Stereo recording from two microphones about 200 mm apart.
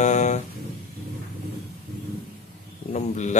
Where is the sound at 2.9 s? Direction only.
35° left (ahead or behind).